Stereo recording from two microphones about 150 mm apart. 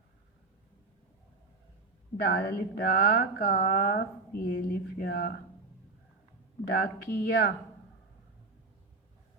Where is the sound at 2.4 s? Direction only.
80° left.